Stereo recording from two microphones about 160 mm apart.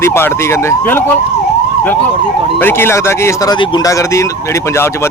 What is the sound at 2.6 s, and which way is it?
Speech, 15° left (ahead or behind).